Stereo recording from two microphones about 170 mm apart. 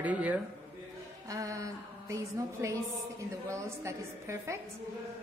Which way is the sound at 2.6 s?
15° right (ahead or behind).